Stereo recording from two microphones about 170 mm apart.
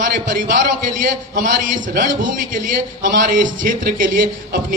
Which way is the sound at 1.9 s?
50° right (ahead or behind).